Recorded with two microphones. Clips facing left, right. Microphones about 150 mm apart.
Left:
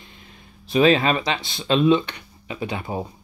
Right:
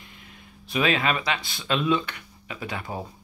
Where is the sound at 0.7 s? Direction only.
30° left (ahead or behind).